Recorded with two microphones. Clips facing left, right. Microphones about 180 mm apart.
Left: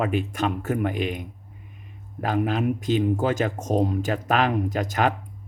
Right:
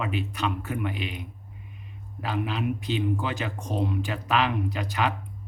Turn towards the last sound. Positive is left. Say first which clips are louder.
# left 5 dB
turn(degrees=45)  # may be behind; listen again after turning